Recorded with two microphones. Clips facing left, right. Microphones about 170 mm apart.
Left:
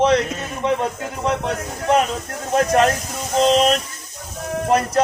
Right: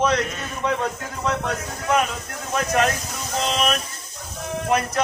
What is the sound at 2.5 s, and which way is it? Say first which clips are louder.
Speech: left 5 dB; 40° left (ahead or behind).